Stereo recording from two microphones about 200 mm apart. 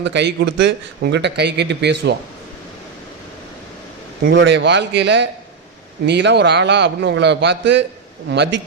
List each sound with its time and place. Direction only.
0.0 s a man's voice: 60° right (ahead or behind)
4.2 s a man's voice: 50° right (ahead or behind)